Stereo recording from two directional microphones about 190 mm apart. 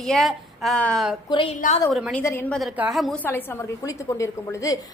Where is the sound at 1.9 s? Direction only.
Centre (ahead or behind).